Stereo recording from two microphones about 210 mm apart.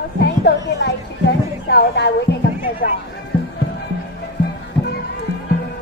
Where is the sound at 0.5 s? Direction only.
55° left (ahead or behind).